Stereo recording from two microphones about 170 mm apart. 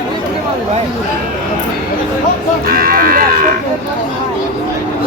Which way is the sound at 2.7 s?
60° right (ahead or behind).